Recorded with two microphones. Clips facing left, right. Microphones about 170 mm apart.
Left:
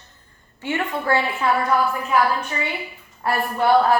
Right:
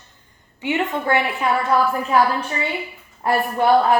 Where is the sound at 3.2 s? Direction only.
20° right (ahead or behind).